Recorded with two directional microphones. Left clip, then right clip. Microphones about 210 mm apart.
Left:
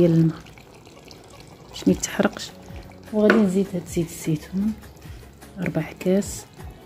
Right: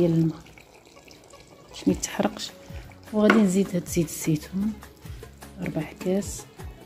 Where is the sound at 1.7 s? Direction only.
Centre (ahead or behind).